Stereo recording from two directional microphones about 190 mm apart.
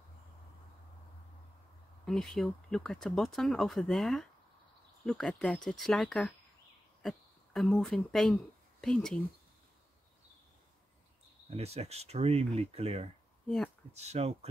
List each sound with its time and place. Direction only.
2.0 s speech: centre (ahead or behind)
11.5 s speech: 35° right (ahead or behind)